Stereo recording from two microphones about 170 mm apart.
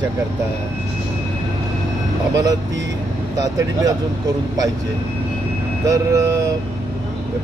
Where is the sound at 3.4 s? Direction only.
20° right (ahead or behind).